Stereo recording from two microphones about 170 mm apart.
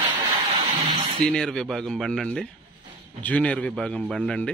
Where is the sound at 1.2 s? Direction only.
5° left (ahead or behind).